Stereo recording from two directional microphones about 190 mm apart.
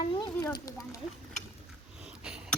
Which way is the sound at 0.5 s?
20° left (ahead or behind).